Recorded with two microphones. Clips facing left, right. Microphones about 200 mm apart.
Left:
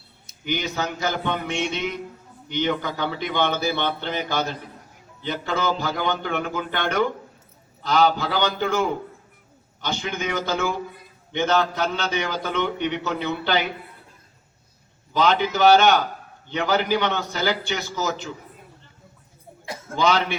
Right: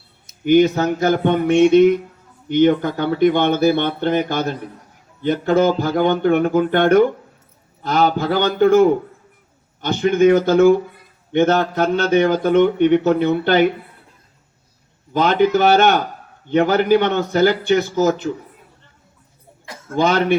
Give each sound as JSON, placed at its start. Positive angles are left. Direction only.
{"t": 0.4, "sound": "a man's voice", "side_deg": -50}
{"t": 15.1, "sound": "a man's voice", "side_deg": -55}
{"t": 20.0, "sound": "a man's voice", "side_deg": -55}